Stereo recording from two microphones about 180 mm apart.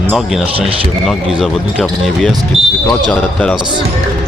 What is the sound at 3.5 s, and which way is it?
Speech, 25° right (ahead or behind).